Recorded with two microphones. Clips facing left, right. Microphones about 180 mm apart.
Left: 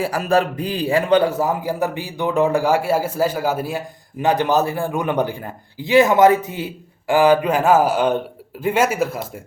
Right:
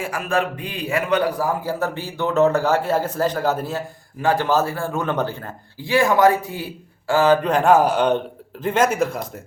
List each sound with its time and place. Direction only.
0.0 s a man's voice: 35° left (ahead or behind); by 9.2 s 5° left (ahead or behind)